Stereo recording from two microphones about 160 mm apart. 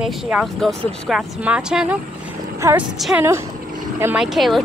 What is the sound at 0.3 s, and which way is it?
Speech, 5° right (ahead or behind).